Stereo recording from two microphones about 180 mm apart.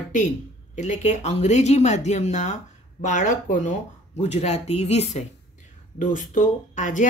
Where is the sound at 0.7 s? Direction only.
40° left (ahead or behind).